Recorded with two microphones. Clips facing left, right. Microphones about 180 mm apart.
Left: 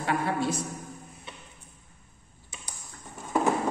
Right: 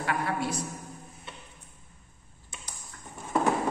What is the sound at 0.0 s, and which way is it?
Speech, 25° left (ahead or behind).